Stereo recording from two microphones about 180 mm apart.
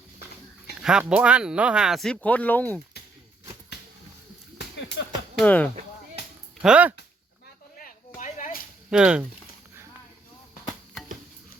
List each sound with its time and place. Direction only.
0.8 s speech: 5° right (ahead or behind)
5.4 s speech: 5° left (ahead or behind)
6.6 s speech: 5° right (ahead or behind)
7.8 s a sound: 45° left (ahead or behind)
8.9 s speech: 5° right (ahead or behind)